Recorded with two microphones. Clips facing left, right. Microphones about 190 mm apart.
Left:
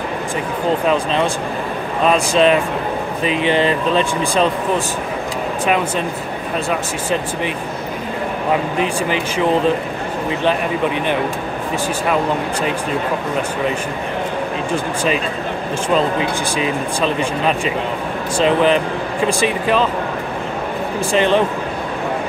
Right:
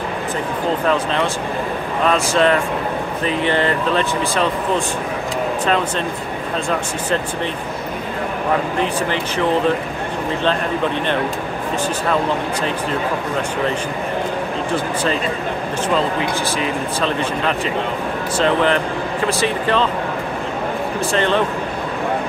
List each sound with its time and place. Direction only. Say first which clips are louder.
0.8 s speech: even; 15° left (ahead or behind)
16.5 s speech: left 2 dB; 15° left (ahead or behind)
21.1 s speech: left 4 dB; 15° left (ahead or behind)